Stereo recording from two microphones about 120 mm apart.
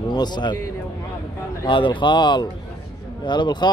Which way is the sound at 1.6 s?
45° left (ahead or behind).